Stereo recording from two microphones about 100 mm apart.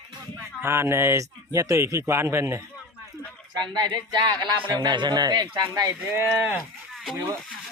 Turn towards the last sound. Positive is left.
turn(degrees=0)  # may be behind; listen again after turning